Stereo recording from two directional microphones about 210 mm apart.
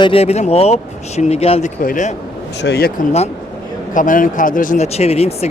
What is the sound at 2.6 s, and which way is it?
Speech, 55° left (ahead or behind).